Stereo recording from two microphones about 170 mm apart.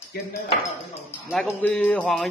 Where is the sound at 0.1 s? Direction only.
70° left (ahead or behind).